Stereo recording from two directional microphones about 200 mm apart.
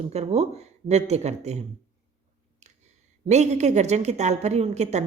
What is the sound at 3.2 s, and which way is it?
A woman's voice, 35° right (ahead or behind).